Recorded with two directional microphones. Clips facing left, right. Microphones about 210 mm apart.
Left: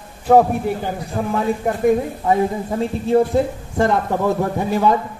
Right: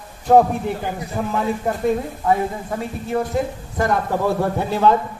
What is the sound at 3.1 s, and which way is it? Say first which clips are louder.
Speech: left 7 dB; 25° left (ahead or behind).